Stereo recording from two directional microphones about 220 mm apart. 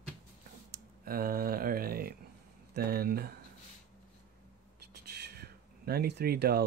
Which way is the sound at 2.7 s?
45° right (ahead or behind).